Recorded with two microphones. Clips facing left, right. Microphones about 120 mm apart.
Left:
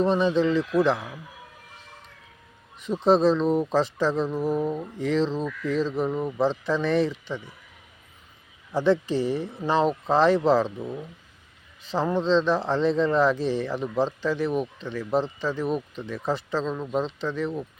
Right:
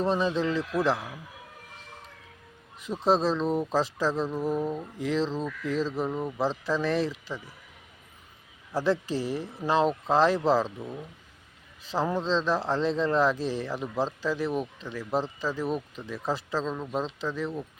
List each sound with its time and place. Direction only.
0.0 s a man's voice: centre (ahead or behind)
3.0 s a man's voice: centre (ahead or behind)
4.9 s a man's voice: 5° right (ahead or behind)
8.7 s a man's voice: 5° right (ahead or behind)